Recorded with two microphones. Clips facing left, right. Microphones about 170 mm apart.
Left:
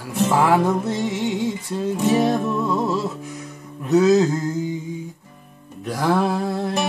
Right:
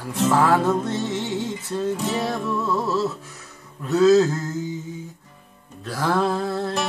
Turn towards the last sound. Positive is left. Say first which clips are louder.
# left 1 dB
turn(degrees=15)  # may be behind; listen again after turning